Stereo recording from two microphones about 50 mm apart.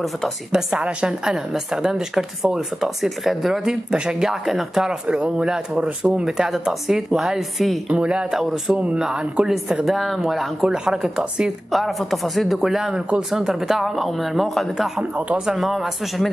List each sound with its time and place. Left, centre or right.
0.5 s a woman's voice: centre
0.7 s a woman's voice: right; by 3.7 s centre
3.9 s speech: centre
4.3 s a woman's voice: centre
5.0 s a woman's voice: right; by 7.8 s centre
7.9 s speech: right
9.8 s a woman's voice: centre
11.7 s speech: centre
15.1 s speech: right
15.4 s speech: centre